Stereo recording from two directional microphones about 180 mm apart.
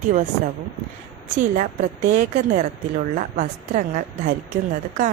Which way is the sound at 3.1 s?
55° right (ahead or behind).